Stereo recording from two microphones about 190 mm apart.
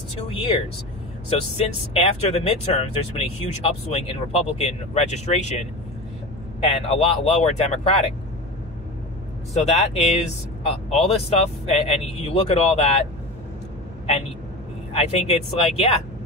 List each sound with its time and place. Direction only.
0.3 s speech: 30° left (ahead or behind)
2.1 s speech: 35° left (ahead or behind)
6.7 s speech: 30° left (ahead or behind)
9.5 s speech: 35° left (ahead or behind)
14.9 s speech: 30° left (ahead or behind)